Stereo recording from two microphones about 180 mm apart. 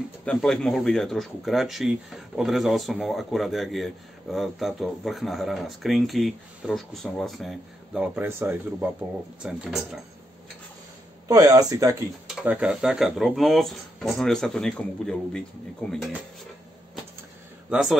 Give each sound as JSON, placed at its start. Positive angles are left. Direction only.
{"t": 0.2, "sound": "speech", "side_deg": 5}
{"t": 11.2, "sound": "speech", "side_deg": -20}
{"t": 12.3, "sound": "speech", "side_deg": -5}
{"t": 17.6, "sound": "speech", "side_deg": -5}